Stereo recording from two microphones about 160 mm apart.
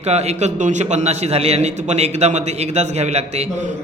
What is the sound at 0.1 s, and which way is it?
A man's voice, 45° right (ahead or behind).